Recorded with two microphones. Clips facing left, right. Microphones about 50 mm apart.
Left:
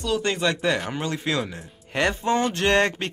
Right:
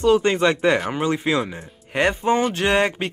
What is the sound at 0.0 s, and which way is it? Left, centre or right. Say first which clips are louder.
Speech: right 7 dB; right.